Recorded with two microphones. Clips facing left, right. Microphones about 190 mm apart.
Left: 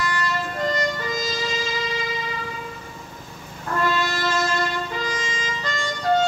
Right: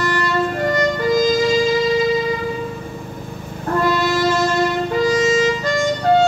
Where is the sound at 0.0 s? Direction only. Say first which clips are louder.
Right 7 dB; 60° right (ahead or behind).